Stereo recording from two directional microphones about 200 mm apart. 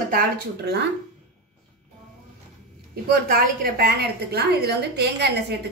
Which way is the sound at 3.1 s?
50° right (ahead or behind).